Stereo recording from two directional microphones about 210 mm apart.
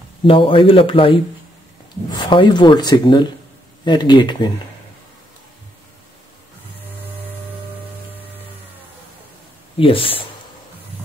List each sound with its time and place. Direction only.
0.2 s speech: 25° left (ahead or behind)
9.8 s speech: 25° left (ahead or behind)